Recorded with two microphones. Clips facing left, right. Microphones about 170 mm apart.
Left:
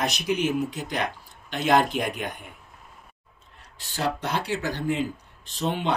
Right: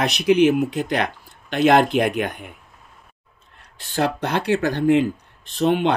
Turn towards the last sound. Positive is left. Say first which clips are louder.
# right 8 dB
turn(degrees=-65)  # may be behind; listen again after turning